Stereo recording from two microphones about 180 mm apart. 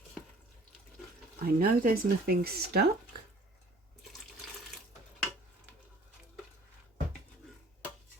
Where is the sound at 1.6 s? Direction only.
55° right (ahead or behind).